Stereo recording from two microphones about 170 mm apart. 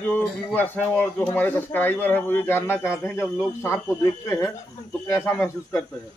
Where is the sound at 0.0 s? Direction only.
10° left (ahead or behind).